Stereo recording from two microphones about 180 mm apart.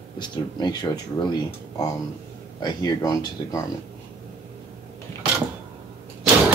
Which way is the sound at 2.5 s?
20° left (ahead or behind).